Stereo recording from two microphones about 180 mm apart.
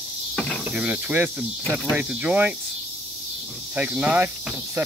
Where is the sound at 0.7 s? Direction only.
10° right (ahead or behind).